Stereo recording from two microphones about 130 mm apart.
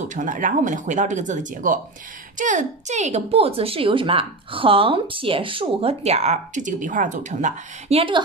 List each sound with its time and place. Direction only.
0.1 s speech: 85° right
2.3 s speech: 75° right (ahead or behind)